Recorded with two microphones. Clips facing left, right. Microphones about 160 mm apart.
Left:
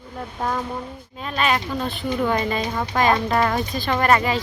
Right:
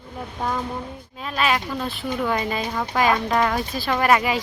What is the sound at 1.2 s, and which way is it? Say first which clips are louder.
Speech: left 1 dB; centre (ahead or behind).